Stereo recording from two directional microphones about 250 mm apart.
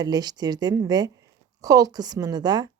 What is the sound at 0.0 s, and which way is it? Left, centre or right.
A woman's voice, centre.